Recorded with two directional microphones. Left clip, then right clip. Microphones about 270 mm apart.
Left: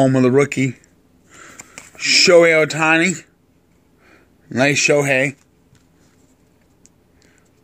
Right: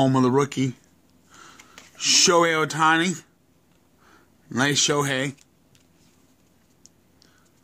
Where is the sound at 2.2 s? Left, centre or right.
Centre.